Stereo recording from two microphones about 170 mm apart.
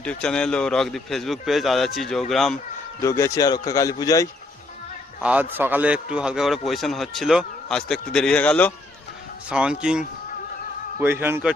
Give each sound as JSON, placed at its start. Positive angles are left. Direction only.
{"t": 0.0, "sound": "a man's voice", "side_deg": 5}
{"t": 3.0, "sound": "speech", "side_deg": 20}
{"t": 5.2, "sound": "a man's voice", "side_deg": -10}
{"t": 9.5, "sound": "a man's voice", "side_deg": -5}